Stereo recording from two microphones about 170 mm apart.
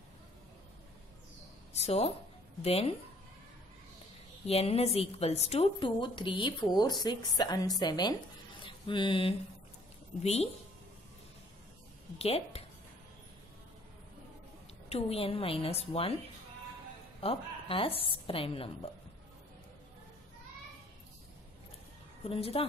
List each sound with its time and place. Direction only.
1.7 s a woman's voice: 40° left (ahead or behind)
4.5 s a woman's voice: 35° left (ahead or behind)
8.6 s mantra: 30° left (ahead or behind)
10.2 s a woman's voice: 40° left (ahead or behind)
12.2 s speech: 35° left (ahead or behind)
14.9 s a woman's voice: 35° left (ahead or behind)
17.2 s a woman's voice: 35° left (ahead or behind)
22.2 s a woman's voice: 35° left (ahead or behind)